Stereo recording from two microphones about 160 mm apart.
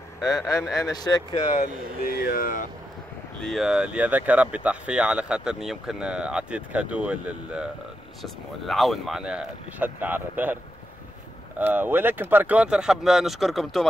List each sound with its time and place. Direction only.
0.8 s speech: 25° left (ahead or behind)
1.6 s speech: 70° left (ahead or behind)
3.3 s speech: centre (ahead or behind)